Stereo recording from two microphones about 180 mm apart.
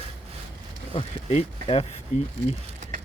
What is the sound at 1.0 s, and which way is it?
Speech, 35° left (ahead or behind).